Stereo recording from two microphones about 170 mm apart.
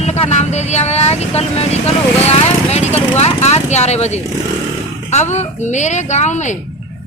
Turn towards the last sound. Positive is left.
turn(degrees=45)  # may be behind; listen again after turning